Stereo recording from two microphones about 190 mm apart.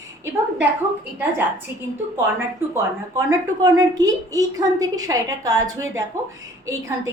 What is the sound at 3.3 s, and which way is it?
A woman's voice, 20° right (ahead or behind).